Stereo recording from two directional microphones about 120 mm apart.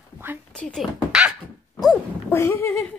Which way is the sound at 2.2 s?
20° left (ahead or behind).